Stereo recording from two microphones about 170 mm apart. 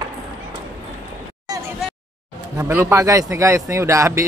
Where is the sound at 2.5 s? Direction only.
15° right (ahead or behind).